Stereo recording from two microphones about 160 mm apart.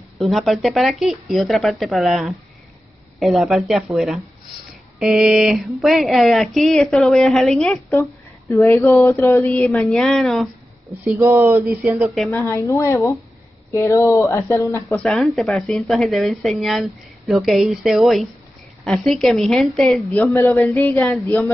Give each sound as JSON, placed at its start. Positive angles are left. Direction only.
{"t": 0.2, "sound": "speech", "side_deg": 0}
{"t": 7.9, "sound": "speech", "side_deg": 20}
{"t": 9.8, "sound": "speech", "side_deg": 0}
{"t": 11.1, "sound": "speech", "side_deg": -15}
{"t": 12.3, "sound": "speech", "side_deg": 15}
{"t": 15.0, "sound": "speech", "side_deg": 0}
{"t": 20.2, "sound": "speech", "side_deg": 15}